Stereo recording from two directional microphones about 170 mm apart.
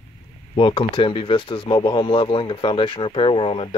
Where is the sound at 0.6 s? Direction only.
30° left (ahead or behind).